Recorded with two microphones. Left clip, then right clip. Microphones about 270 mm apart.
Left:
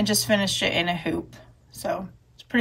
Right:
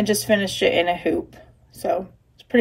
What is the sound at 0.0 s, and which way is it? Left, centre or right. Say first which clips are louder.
Speech: right 3 dB; left.